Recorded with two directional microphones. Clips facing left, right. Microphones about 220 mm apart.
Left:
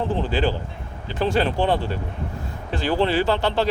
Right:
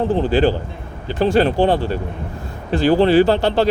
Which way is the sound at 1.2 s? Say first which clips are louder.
Right 6 dB; 40° right (ahead or behind).